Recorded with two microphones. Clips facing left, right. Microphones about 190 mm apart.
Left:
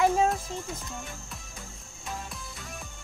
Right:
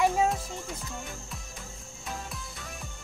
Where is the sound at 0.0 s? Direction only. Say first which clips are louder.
Left 1 dB; centre (ahead or behind).